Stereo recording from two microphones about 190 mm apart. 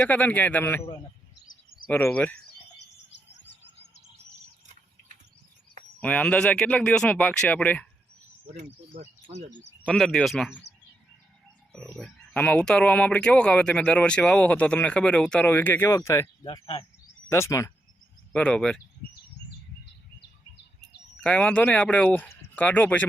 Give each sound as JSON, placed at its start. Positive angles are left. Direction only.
{"t": 0.0, "sound": "speech", "side_deg": 10}
{"t": 1.9, "sound": "speech", "side_deg": 10}
{"t": 3.1, "sound": "bird vocalization", "side_deg": 70}
{"t": 6.0, "sound": "speech", "side_deg": 10}
{"t": 8.5, "sound": "speech", "side_deg": -35}
{"t": 9.8, "sound": "speech", "side_deg": 0}
{"t": 11.7, "sound": "speech", "side_deg": 5}
{"t": 16.5, "sound": "speech", "side_deg": 30}
{"t": 17.2, "sound": "speech", "side_deg": 15}
{"t": 21.2, "sound": "speech", "side_deg": 5}